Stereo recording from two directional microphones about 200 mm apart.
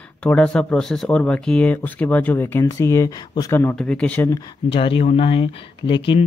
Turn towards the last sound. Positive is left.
turn(degrees=25)  # may be behind; listen again after turning